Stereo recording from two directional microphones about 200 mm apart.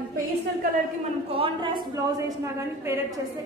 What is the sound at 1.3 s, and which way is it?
A woman's voice, 25° right (ahead or behind).